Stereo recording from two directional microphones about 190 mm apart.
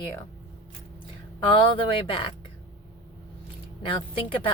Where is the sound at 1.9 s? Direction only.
25° left (ahead or behind).